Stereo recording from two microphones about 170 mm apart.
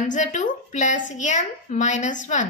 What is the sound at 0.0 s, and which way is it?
A woman's voice, 45° left (ahead or behind).